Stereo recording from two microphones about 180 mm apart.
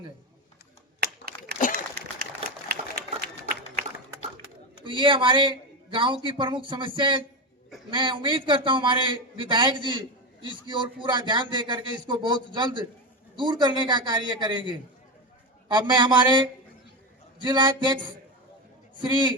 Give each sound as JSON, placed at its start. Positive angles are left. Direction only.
{"t": 1.5, "sound": "a sound", "side_deg": 50}
{"t": 2.6, "sound": "run", "side_deg": -60}
{"t": 4.8, "sound": "a man's voice", "side_deg": -25}
{"t": 19.0, "sound": "a man's voice", "side_deg": -25}